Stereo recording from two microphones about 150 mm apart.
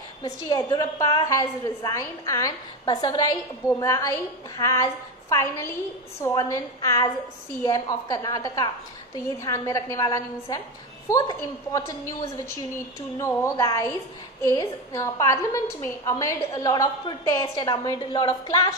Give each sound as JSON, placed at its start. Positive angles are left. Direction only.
{"t": 0.2, "sound": "a woman's voice", "side_deg": 25}